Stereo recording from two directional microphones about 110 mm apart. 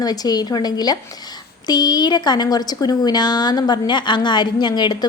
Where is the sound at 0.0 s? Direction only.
35° left (ahead or behind).